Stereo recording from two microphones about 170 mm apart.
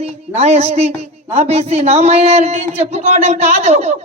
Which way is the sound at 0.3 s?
40° right (ahead or behind).